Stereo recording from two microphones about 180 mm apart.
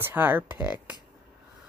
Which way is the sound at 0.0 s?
10° right (ahead or behind).